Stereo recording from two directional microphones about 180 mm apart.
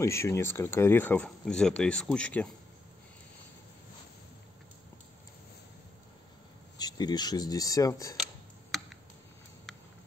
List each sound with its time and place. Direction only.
0.0 s speech: 15° left (ahead or behind)
6.8 s speech: 20° left (ahead or behind)
8.7 s a sound: centre (ahead or behind)